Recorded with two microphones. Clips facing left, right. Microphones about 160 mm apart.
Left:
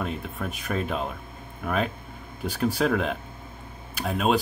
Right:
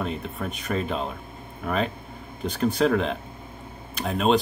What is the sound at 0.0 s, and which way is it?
Speech, centre (ahead or behind).